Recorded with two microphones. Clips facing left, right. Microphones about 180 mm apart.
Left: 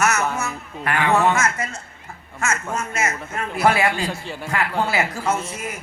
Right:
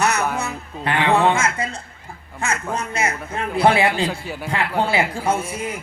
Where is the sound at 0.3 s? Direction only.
30° right (ahead or behind).